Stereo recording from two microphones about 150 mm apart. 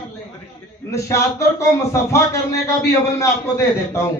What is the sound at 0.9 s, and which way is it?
A man's voice, 20° left (ahead or behind).